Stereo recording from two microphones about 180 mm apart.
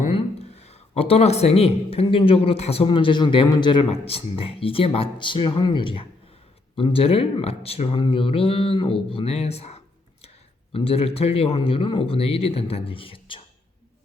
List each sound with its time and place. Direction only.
0.1 s speech: 35° left (ahead or behind)